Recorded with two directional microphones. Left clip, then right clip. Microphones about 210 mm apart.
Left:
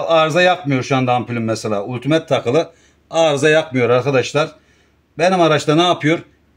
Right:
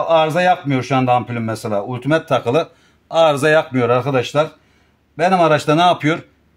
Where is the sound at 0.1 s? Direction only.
30° right (ahead or behind).